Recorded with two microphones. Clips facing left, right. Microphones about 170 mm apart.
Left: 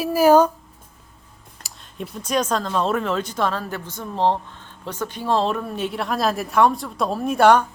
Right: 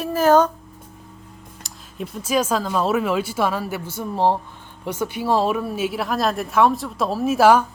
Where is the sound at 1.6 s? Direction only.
5° right (ahead or behind).